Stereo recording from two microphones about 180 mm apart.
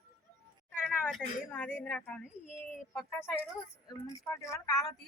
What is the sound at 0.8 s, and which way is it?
Speech, 5° left (ahead or behind).